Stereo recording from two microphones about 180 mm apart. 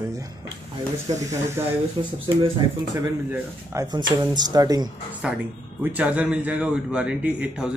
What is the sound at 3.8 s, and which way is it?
Speech, 25° right (ahead or behind).